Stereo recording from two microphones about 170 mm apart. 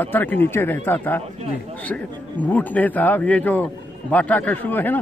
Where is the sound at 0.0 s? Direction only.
10° left (ahead or behind).